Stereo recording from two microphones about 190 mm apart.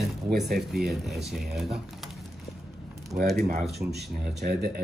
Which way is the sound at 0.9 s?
Centre (ahead or behind).